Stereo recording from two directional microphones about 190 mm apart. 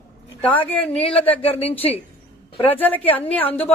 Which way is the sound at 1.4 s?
30° left (ahead or behind).